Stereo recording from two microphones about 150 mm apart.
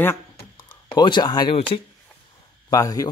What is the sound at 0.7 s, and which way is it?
Speech, 30° left (ahead or behind).